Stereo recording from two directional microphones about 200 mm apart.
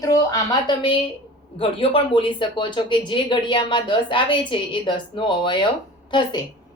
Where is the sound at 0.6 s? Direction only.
25° left (ahead or behind).